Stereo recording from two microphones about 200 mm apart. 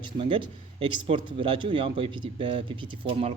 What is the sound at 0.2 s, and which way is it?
Speech, 25° right (ahead or behind).